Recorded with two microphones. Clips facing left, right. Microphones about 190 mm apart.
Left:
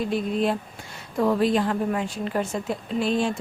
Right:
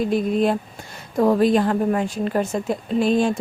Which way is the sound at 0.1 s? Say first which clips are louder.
Right 4 dB; 50° right (ahead or behind).